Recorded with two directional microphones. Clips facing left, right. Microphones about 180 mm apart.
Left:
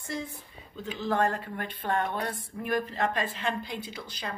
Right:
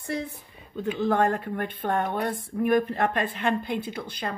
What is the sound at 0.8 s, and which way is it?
Speech, 55° right (ahead or behind).